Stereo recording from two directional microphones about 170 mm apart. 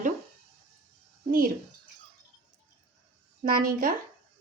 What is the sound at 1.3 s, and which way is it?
Speech, 60° right (ahead or behind).